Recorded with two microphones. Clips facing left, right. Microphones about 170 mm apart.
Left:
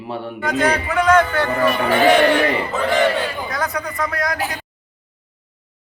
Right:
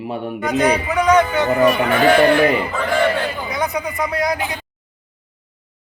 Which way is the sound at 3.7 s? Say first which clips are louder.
Right 2 dB; 10° right (ahead or behind).